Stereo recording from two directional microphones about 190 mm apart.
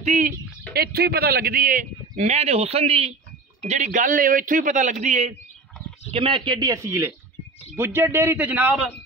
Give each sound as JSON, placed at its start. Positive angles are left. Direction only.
{"t": 0.0, "sound": "speech", "side_deg": -35}
{"t": 0.7, "sound": "a man's voice", "side_deg": -55}
{"t": 6.1, "sound": "a man's voice", "side_deg": -25}